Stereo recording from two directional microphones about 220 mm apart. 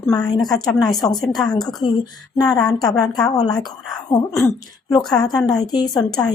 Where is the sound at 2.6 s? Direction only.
15° left (ahead or behind).